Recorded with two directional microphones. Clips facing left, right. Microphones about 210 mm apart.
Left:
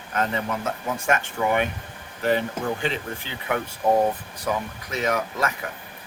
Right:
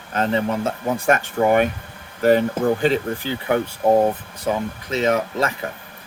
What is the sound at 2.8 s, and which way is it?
Speech, 35° right (ahead or behind).